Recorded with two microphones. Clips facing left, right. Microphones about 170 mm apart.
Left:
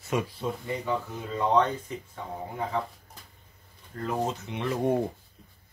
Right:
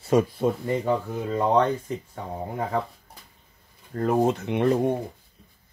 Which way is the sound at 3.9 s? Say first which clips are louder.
Right 8 dB; 50° right (ahead or behind).